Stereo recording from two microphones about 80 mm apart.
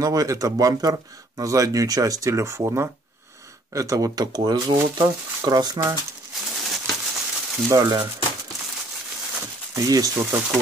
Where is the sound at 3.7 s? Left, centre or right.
Right.